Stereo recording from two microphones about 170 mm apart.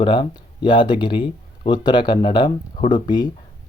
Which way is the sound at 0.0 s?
30° left (ahead or behind).